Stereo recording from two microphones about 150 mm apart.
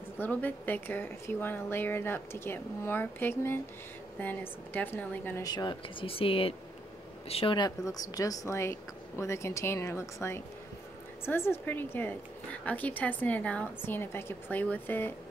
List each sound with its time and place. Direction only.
0.2 s a woman's voice: 10° left (ahead or behind)
5.4 s a woman's voice: 25° left (ahead or behind)